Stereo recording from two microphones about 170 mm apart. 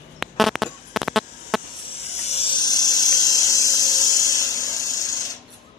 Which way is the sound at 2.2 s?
40° left (ahead or behind).